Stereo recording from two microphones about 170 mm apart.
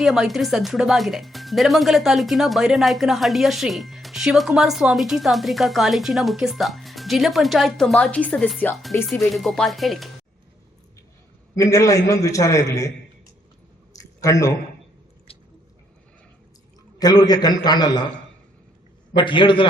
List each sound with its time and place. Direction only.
0.0 s speech: centre (ahead or behind)
11.5 s a man's voice: 20° left (ahead or behind)
14.0 s a sound: 20° left (ahead or behind)
15.3 s squish: 35° left (ahead or behind)
17.0 s a man's voice: 20° left (ahead or behind)
19.1 s a man's voice: 30° left (ahead or behind)